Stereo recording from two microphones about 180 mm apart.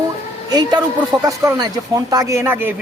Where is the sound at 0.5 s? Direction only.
20° right (ahead or behind).